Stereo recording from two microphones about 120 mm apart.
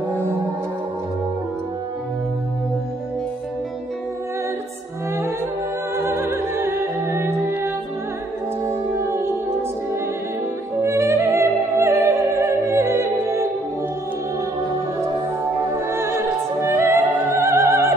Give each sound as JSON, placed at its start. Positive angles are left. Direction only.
{"t": 5.9, "sound": "music", "side_deg": -20}
{"t": 10.8, "sound": "music", "side_deg": -20}
{"t": 15.9, "sound": "opera", "side_deg": -20}